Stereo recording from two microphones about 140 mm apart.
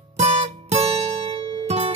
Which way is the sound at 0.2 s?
45° right (ahead or behind).